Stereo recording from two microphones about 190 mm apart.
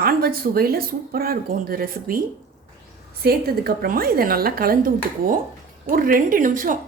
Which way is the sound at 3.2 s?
55° right (ahead or behind).